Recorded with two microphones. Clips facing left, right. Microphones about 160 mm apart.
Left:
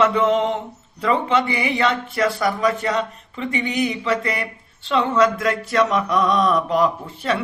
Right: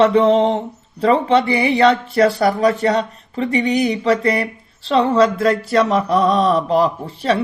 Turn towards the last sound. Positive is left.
turn(degrees=-30)  # may be behind; listen again after turning